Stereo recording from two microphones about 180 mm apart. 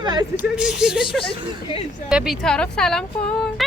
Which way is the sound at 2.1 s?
5° right (ahead or behind).